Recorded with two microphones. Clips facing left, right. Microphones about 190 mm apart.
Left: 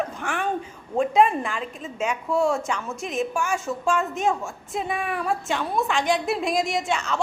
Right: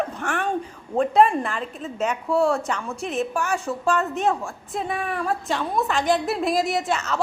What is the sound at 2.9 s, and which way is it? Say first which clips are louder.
Speech: right 2 dB; 35° right (ahead or behind).